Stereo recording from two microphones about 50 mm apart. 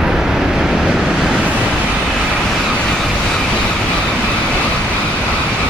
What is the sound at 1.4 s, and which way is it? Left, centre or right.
Vehicle, right.